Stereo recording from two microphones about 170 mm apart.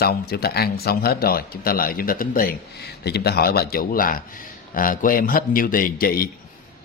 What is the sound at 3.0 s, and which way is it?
Speech, 70° left (ahead or behind).